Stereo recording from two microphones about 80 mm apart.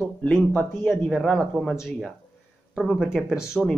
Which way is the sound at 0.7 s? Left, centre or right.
Left.